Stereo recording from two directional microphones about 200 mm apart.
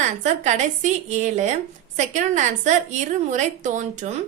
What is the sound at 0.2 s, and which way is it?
A woman's voice, 35° right (ahead or behind).